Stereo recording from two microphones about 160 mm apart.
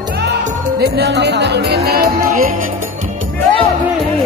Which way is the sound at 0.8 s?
85° right.